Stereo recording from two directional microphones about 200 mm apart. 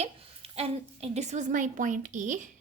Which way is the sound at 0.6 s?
30° right (ahead or behind).